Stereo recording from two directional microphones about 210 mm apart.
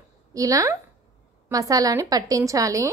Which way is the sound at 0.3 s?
15° right (ahead or behind).